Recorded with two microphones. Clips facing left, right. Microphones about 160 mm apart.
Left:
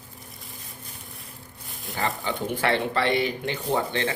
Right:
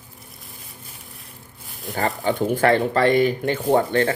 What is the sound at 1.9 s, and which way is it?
Speech, 40° right (ahead or behind).